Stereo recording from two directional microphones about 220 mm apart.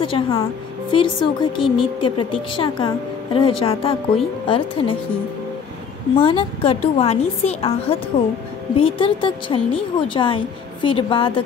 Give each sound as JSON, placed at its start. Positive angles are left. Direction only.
{"t": 0.0, "sound": "speech", "side_deg": 25}
{"t": 6.1, "sound": "speech", "side_deg": 25}